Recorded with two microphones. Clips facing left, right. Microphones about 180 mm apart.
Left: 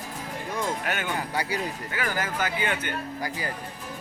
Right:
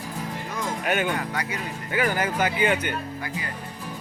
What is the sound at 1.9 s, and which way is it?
Speech, 20° right (ahead or behind).